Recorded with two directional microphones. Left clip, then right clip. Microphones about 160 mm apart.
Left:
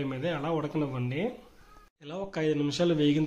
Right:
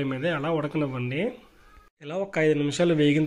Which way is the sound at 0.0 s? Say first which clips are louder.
Right 5 dB; 25° right (ahead or behind).